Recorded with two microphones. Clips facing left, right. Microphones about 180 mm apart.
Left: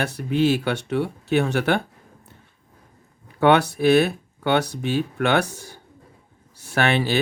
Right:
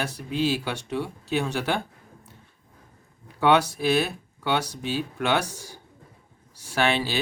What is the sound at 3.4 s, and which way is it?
Speech, 60° left (ahead or behind).